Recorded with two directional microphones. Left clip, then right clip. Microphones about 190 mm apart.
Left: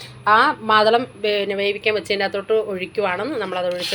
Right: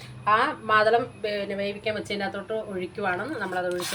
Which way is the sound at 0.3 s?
20° left (ahead or behind).